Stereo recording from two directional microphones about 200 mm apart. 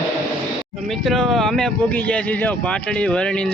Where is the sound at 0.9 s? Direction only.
Centre (ahead or behind).